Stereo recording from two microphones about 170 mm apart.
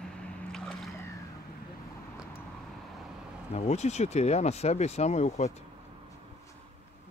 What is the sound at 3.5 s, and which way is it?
Speech, 40° left (ahead or behind).